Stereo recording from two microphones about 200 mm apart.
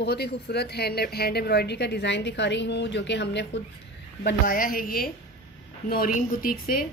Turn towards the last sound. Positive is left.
turn(degrees=45)  # may be behind; listen again after turning